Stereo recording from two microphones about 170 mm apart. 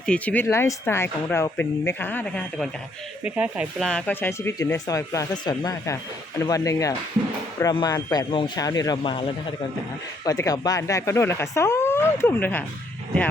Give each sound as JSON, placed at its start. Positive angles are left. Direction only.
{"t": 0.0, "sound": "speech", "side_deg": 10}
{"t": 3.2, "sound": "speech", "side_deg": -10}
{"t": 3.8, "sound": "speech", "side_deg": 5}
{"t": 10.2, "sound": "speech", "side_deg": 20}